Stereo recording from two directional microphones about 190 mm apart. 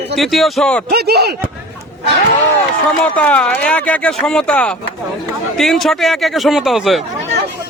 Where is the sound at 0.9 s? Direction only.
55° right (ahead or behind).